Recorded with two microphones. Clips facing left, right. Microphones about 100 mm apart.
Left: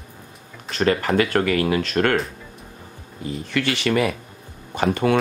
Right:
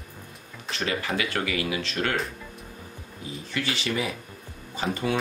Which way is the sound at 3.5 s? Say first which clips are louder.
Left 8 dB; 65° left (ahead or behind).